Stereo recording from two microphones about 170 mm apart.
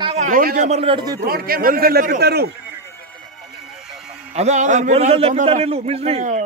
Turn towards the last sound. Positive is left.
turn(degrees=-40)  # may be behind; listen again after turning